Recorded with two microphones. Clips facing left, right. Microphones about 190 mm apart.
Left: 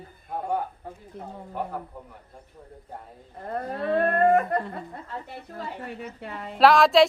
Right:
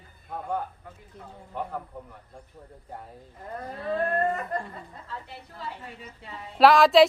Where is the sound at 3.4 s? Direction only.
65° left (ahead or behind).